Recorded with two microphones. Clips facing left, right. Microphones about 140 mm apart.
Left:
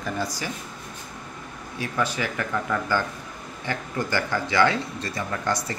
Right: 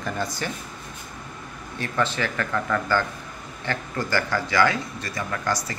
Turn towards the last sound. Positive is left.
turn(degrees=25)  # may be behind; listen again after turning